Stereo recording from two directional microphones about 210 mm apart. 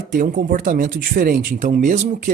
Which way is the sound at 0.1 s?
40° right (ahead or behind).